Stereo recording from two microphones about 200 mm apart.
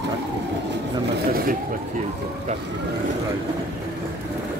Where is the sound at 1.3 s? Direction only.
45° right (ahead or behind).